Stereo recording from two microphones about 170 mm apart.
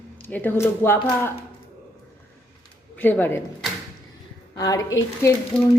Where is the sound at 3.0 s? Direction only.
10° left (ahead or behind).